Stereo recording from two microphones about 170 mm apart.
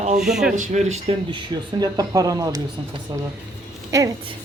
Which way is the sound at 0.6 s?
40° right (ahead or behind).